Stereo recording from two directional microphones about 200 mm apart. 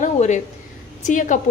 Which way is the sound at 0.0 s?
35° left (ahead or behind).